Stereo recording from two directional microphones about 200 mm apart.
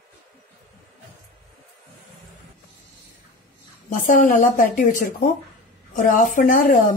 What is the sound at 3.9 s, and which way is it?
A woman's voice, 40° left (ahead or behind).